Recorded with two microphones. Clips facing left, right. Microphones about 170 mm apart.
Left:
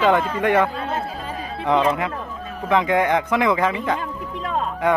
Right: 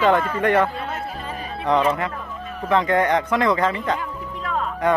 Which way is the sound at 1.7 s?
15° left (ahead or behind).